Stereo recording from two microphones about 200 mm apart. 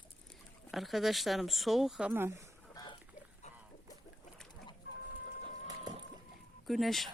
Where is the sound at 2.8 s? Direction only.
20° left (ahead or behind).